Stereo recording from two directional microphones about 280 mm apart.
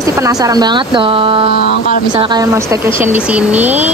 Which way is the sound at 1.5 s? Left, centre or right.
Left.